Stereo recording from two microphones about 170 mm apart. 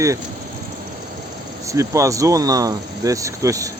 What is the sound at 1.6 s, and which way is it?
Speech, 20° right (ahead or behind).